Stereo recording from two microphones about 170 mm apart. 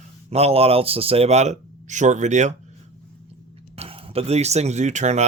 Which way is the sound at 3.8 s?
35° right (ahead or behind).